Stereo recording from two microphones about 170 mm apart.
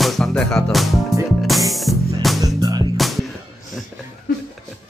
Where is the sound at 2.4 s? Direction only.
20° right (ahead or behind).